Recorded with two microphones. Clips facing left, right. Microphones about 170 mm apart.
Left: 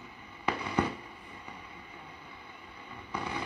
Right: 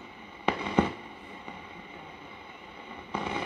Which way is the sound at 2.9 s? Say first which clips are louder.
Right 3 dB; 25° right (ahead or behind).